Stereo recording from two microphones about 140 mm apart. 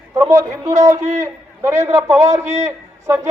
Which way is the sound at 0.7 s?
60° right (ahead or behind).